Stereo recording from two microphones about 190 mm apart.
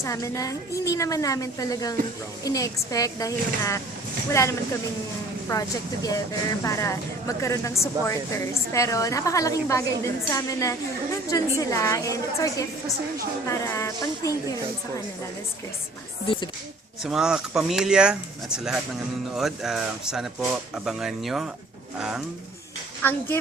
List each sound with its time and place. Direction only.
0.0 s speech: 15° left (ahead or behind)
16.2 s speech: 25° left (ahead or behind)
17.0 s speech: 5° right (ahead or behind)